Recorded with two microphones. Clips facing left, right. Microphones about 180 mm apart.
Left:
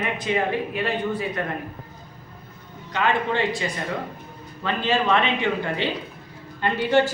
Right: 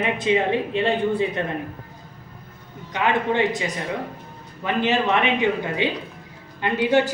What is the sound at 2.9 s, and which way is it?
A man's voice, 15° right (ahead or behind).